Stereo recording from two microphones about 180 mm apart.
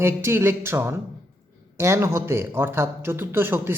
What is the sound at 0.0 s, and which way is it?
A man's voice, 15° right (ahead or behind).